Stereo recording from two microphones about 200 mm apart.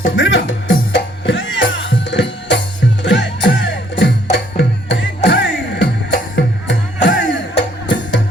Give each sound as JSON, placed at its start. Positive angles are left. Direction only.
{"t": 0.2, "sound": "music", "side_deg": 65}